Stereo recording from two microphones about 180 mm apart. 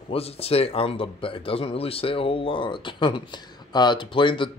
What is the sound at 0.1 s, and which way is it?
A man's voice, 35° left (ahead or behind).